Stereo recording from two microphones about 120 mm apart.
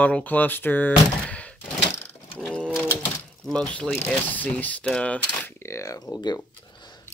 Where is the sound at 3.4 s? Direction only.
10° left (ahead or behind).